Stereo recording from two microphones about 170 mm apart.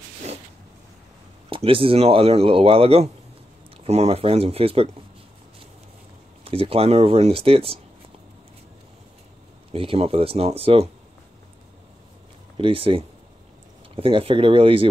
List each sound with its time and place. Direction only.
1.5 s speech: 30° right (ahead or behind)
6.4 s speech: 35° right (ahead or behind)
9.7 s speech: 35° right (ahead or behind)
12.5 s speech: 30° right (ahead or behind)